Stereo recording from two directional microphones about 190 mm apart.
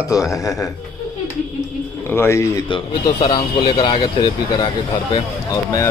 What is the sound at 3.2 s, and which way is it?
Speech, 25° left (ahead or behind).